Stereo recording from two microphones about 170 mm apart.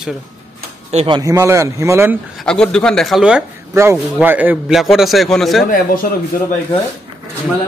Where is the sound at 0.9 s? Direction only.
30° right (ahead or behind).